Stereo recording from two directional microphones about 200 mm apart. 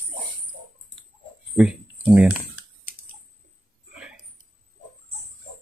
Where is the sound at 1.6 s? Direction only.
5° right (ahead or behind).